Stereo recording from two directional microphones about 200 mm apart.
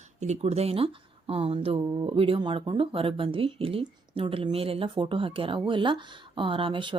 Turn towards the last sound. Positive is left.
turn(degrees=-25)  # may be behind; listen again after turning